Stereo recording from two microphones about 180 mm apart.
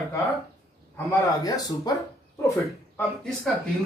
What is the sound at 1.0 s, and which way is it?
Speech, 20° left (ahead or behind).